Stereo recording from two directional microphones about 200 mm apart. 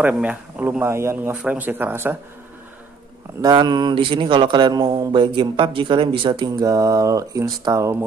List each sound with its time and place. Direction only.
0.0 s speech: 10° right (ahead or behind)
3.3 s speech: 20° right (ahead or behind)